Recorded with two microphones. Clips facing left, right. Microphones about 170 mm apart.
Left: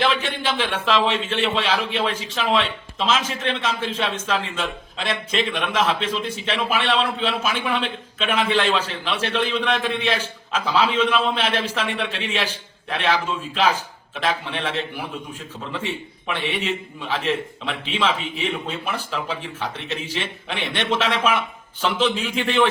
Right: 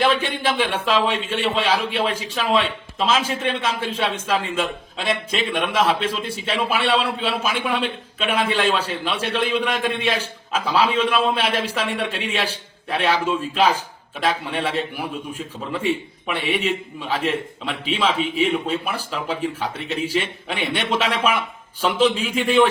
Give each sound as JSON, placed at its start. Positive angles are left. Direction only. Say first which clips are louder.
{"t": 0.0, "sound": "a man's voice", "louder": "right 2 dB", "side_deg": -10}